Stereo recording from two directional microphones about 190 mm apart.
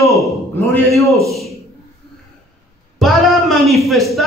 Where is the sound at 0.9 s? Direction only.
Centre (ahead or behind).